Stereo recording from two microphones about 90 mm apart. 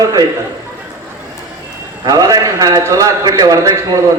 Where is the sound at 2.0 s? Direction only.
45° right (ahead or behind).